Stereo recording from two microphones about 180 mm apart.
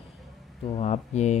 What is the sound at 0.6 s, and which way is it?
Speech, 35° left (ahead or behind).